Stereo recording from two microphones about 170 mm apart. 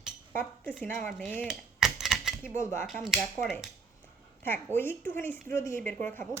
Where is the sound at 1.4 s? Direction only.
Centre (ahead or behind).